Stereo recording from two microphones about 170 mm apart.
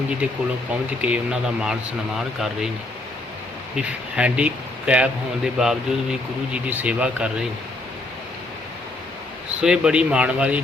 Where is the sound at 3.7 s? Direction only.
5° right (ahead or behind).